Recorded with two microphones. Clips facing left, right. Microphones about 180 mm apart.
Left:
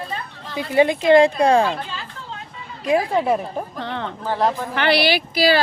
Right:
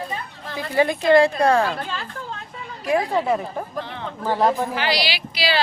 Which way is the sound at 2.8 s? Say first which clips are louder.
Left 2 dB; 20° left (ahead or behind).